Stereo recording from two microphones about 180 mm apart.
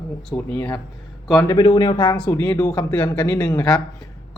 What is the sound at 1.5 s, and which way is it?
Speech, 30° left (ahead or behind).